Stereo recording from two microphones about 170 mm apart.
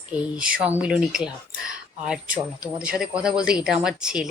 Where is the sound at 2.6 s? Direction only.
5° right (ahead or behind).